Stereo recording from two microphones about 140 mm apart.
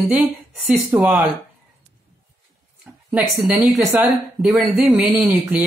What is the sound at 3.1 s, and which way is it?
Speech, 10° right (ahead or behind).